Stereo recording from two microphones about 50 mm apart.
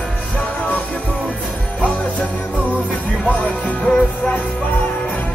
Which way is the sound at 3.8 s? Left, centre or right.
Centre.